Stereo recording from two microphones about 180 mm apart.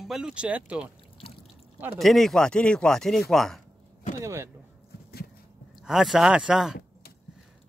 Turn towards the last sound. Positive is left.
turn(degrees=-5)  # may be behind; listen again after turning